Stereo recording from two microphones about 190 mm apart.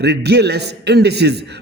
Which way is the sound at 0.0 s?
60° right (ahead or behind).